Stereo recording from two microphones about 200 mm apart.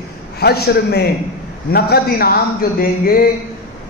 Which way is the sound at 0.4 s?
55° left (ahead or behind).